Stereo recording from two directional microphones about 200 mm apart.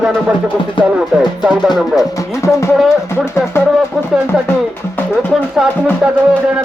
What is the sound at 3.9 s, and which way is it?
Speech, centre (ahead or behind).